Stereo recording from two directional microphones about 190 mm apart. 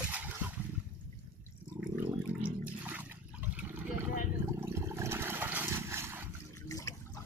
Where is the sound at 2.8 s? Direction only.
10° right (ahead or behind).